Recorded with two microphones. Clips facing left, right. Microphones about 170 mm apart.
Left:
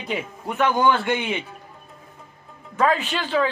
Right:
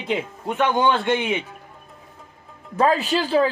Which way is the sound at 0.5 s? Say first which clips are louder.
Even; 20° right (ahead or behind).